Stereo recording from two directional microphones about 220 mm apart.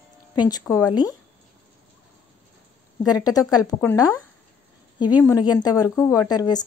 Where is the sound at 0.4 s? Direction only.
15° left (ahead or behind).